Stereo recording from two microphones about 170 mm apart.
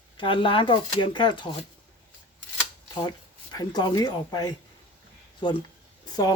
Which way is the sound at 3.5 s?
25° left (ahead or behind).